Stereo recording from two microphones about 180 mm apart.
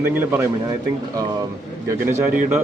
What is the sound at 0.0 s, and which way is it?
Speech, 10° right (ahead or behind).